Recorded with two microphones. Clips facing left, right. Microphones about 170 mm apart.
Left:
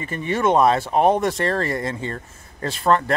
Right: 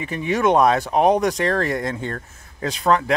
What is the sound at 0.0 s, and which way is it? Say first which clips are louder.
Speech: right 1 dB; centre (ahead or behind).